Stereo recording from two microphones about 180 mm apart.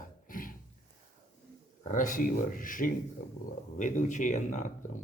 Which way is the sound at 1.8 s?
45° left (ahead or behind).